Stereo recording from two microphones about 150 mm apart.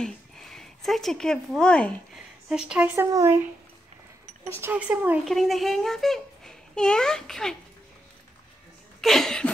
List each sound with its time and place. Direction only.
0.0 s speech: 5° left (ahead or behind)
2.7 s speech: 10° right (ahead or behind)
4.6 s speech: 10° right (ahead or behind)
5.2 s a child's voice: centre (ahead or behind)
9.0 s a sound: centre (ahead or behind)